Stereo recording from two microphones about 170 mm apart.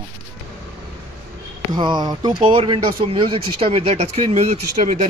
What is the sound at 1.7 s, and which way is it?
Speech, 25° right (ahead or behind).